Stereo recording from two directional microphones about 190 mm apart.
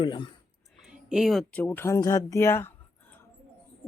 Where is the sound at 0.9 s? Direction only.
5° right (ahead or behind); by 2.7 s 15° left (ahead or behind).